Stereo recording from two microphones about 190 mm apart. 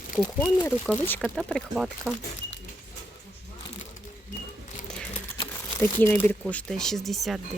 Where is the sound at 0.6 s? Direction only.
10° left (ahead or behind).